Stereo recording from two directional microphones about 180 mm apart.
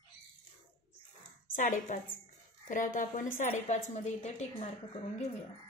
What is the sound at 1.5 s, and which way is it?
A woman's voice, 45° left (ahead or behind).